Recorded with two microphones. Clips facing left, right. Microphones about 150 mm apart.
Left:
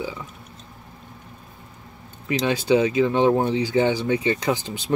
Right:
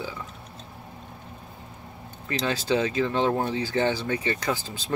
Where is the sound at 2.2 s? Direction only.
15° left (ahead or behind).